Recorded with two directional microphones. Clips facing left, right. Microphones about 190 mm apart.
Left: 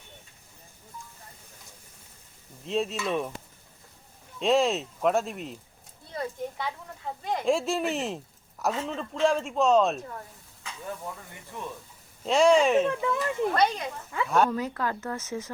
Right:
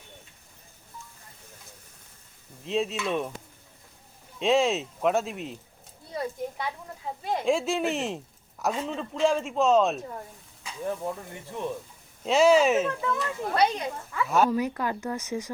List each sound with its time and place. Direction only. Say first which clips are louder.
2.6 s a man's voice: right 1 dB; centre (ahead or behind)
4.4 s a man's voice: even; centre (ahead or behind)
6.1 s a man's voice: right 1 dB; 10° right (ahead or behind)
12.2 s a man's voice: right 1 dB; 5° right (ahead or behind)
12.9 s speech: left 2 dB; 20° left (ahead or behind)
13.5 s speech: right 4 dB; 15° right (ahead or behind)
14.3 s a man's voice: right 1 dB; centre (ahead or behind)
14.5 s speech: right 2 dB; 15° right (ahead or behind)